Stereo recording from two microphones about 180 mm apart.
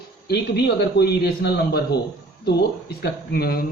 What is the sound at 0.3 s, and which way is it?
Speech, 65° left (ahead or behind).